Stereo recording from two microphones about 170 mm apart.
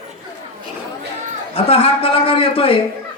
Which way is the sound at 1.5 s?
35° left (ahead or behind).